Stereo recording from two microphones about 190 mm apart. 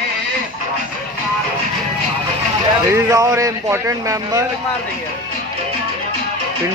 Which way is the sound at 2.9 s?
15° right (ahead or behind).